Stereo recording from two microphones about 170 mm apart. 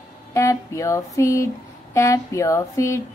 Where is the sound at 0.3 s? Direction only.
20° left (ahead or behind).